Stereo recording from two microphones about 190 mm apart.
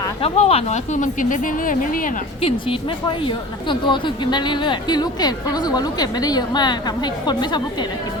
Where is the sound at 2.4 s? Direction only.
30° left (ahead or behind).